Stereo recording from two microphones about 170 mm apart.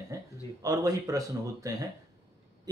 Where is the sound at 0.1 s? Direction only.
20° right (ahead or behind).